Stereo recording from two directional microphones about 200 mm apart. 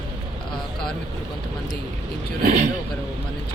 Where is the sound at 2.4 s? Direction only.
40° right (ahead or behind).